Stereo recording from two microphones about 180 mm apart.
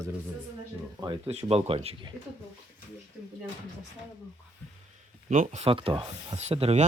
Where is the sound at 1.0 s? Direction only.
30° right (ahead or behind).